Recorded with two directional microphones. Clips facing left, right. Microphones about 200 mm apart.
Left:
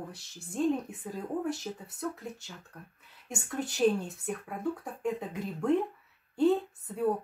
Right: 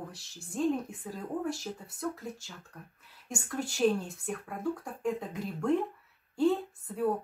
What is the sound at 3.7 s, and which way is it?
A woman's voice, centre (ahead or behind).